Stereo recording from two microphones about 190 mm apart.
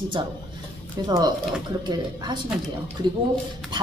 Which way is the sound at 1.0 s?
20° right (ahead or behind).